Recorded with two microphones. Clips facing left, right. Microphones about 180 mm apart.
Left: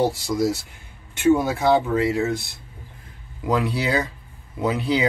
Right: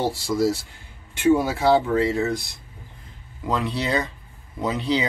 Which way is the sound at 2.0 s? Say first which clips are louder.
Left 1 dB; 5° left (ahead or behind).